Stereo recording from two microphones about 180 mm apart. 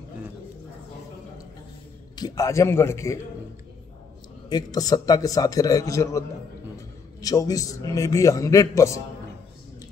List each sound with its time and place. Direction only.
2.1 s a man's voice: 20° left (ahead or behind)
4.5 s a man's voice: 20° left (ahead or behind)